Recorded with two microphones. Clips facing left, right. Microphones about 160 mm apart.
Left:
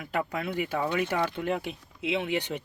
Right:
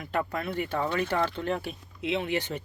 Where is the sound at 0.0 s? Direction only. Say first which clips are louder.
Even; 5° left (ahead or behind).